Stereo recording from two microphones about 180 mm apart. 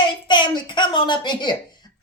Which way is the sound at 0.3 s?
25° left (ahead or behind).